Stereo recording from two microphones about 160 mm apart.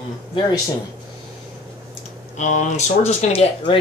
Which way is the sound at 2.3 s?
50° left (ahead or behind).